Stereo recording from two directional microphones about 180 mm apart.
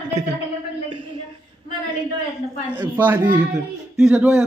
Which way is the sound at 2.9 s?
10° right (ahead or behind).